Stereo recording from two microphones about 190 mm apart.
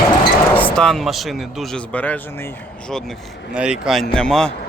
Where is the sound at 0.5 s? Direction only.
5° left (ahead or behind).